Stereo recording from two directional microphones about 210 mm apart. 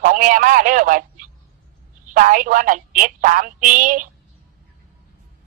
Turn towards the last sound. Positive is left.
turn(degrees=-40)  # may be behind; listen again after turning